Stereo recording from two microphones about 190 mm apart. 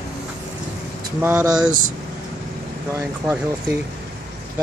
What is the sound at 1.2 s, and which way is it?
Speech, 10° right (ahead or behind).